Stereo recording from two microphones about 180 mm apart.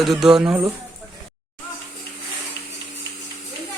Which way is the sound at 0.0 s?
Centre (ahead or behind).